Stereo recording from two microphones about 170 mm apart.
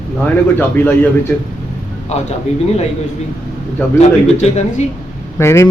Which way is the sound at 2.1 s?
40° left (ahead or behind).